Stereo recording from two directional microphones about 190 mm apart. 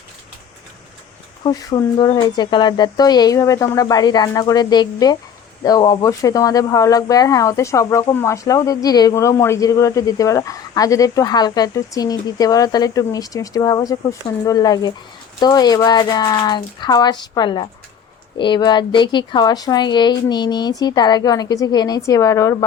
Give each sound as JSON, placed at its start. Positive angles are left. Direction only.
{"t": 1.5, "sound": "speech", "side_deg": 25}